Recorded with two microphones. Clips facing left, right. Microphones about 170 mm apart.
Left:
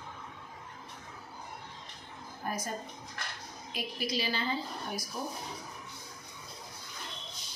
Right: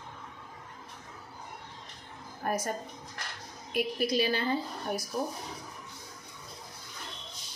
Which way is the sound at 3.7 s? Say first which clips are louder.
Right 7 dB; 60° right (ahead or behind).